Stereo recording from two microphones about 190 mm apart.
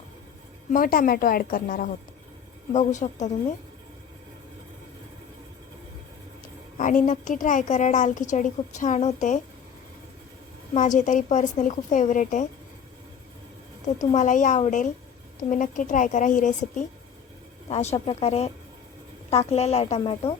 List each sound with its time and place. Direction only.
0.7 s a woman's voice: 50° left (ahead or behind)
6.7 s a woman's voice: 45° left (ahead or behind)
10.8 s a woman's voice: 40° left (ahead or behind)
14.0 s a woman's voice: 40° left (ahead or behind)